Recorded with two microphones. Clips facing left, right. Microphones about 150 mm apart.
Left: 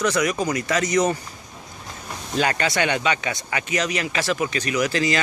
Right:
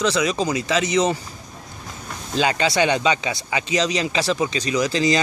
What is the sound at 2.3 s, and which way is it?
Speech, 20° right (ahead or behind).